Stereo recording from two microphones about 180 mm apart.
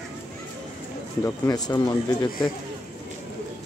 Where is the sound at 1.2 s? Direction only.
20° left (ahead or behind).